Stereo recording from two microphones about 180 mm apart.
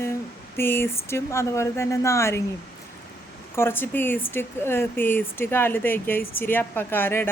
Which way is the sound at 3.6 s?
10° left (ahead or behind).